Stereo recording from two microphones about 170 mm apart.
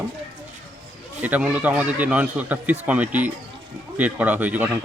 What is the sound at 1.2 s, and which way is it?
Speech, 10° right (ahead or behind).